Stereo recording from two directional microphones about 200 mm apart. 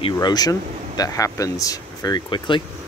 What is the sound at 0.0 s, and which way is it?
Speech, 20° left (ahead or behind).